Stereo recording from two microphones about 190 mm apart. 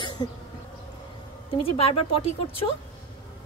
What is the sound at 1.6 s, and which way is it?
Speech, 30° left (ahead or behind).